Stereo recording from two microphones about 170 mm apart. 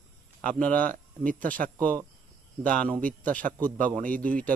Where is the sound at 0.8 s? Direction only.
55° right (ahead or behind).